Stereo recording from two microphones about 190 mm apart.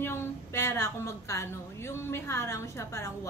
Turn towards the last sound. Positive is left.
turn(degrees=15)  # may be behind; listen again after turning